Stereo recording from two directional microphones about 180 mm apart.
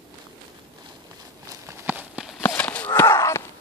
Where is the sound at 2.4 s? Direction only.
10° left (ahead or behind).